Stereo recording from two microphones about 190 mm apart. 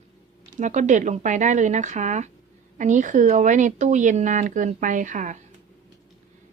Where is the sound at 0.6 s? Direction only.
40° right (ahead or behind).